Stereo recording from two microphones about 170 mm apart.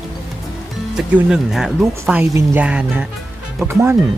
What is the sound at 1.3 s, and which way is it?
Speech, 5° right (ahead or behind).